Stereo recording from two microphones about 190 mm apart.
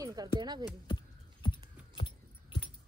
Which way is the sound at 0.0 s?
20° right (ahead or behind).